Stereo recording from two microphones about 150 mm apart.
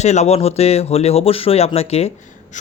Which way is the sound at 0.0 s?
50° left (ahead or behind).